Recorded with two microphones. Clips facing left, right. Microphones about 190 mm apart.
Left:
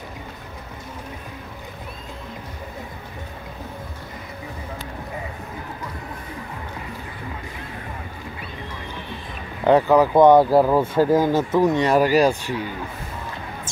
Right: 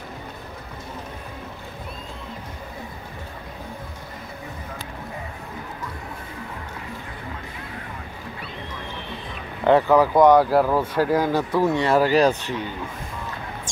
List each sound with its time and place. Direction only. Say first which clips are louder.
9.7 s speech: left 1 dB; 15° left (ahead or behind)